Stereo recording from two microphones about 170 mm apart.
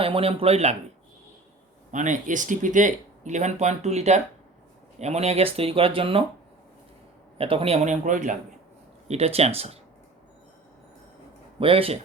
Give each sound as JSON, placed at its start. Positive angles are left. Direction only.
{"t": 0.0, "sound": "speech", "side_deg": -35}
{"t": 1.9, "sound": "speech", "side_deg": -45}
{"t": 7.3, "sound": "speech", "side_deg": -35}
{"t": 9.0, "sound": "speech", "side_deg": -35}
{"t": 11.6, "sound": "speech", "side_deg": -35}